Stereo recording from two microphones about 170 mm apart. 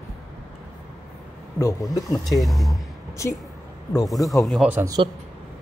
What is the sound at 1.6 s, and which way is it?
Speech, 20° left (ahead or behind).